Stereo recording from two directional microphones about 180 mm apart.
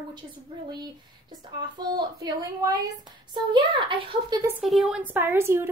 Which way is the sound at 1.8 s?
20° right (ahead or behind).